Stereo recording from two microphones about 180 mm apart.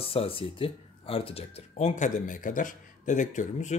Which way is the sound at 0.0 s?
30° left (ahead or behind).